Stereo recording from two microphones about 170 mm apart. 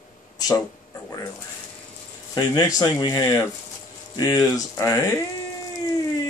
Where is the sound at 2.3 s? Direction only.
20° left (ahead or behind).